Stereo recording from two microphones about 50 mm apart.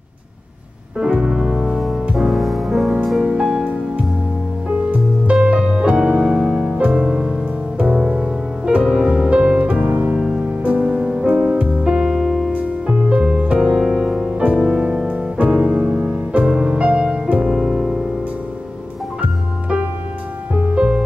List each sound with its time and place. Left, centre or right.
0.9 s music: centre
3.2 s music: centre
10.1 s music: centre
10.6 s music: right; by 12.5 s centre
12.5 s music: right
17.6 s music: centre
19.2 s music: right